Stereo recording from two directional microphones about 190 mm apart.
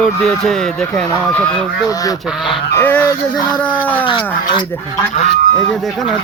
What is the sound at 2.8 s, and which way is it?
Speech, 10° left (ahead or behind).